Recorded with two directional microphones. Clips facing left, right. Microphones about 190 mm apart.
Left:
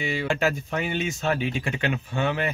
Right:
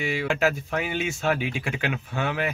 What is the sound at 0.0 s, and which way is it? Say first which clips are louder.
Speech: right 1 dB; 5° right (ahead or behind).